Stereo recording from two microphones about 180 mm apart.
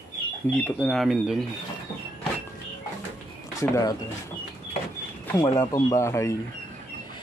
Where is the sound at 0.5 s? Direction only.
10° left (ahead or behind).